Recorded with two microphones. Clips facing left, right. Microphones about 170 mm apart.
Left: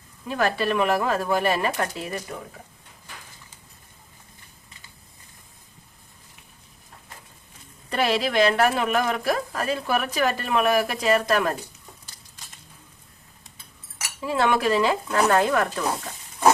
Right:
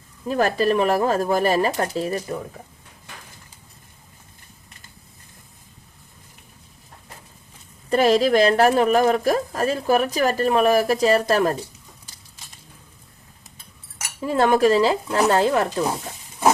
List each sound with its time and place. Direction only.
0.3 s speech: 40° right (ahead or behind)
7.9 s speech: 40° right (ahead or behind)
14.3 s speech: 45° right (ahead or behind); by 15.8 s 25° right (ahead or behind)